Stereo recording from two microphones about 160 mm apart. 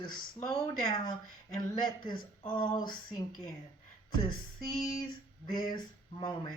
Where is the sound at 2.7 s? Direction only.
25° left (ahead or behind).